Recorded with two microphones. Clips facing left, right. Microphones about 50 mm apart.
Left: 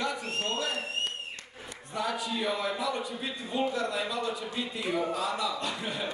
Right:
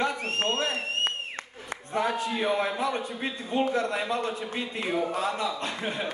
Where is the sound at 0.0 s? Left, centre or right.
Right.